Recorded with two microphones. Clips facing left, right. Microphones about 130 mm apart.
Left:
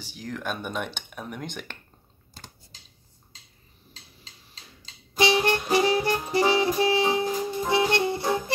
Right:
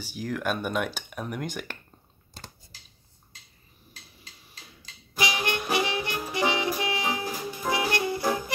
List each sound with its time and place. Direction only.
0.0 s speech: 10° right (ahead or behind)
5.1 s music: 30° left (ahead or behind)